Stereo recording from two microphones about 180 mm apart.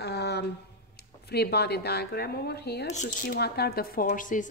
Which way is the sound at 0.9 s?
65° left (ahead or behind).